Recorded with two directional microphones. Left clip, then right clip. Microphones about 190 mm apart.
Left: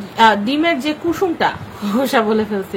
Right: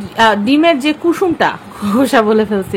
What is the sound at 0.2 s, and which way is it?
A woman's voice, 40° right (ahead or behind).